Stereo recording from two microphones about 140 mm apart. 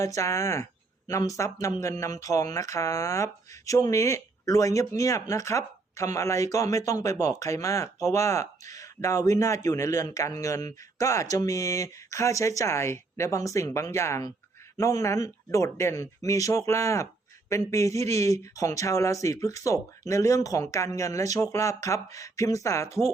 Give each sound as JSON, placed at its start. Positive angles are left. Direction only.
{"t": 0.0, "sound": "speech", "side_deg": 20}